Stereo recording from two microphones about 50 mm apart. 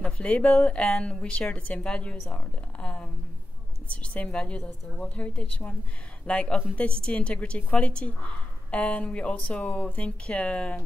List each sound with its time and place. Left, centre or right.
0.0 s speech: left